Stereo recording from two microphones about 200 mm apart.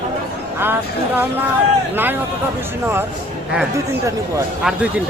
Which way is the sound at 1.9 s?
10° right (ahead or behind).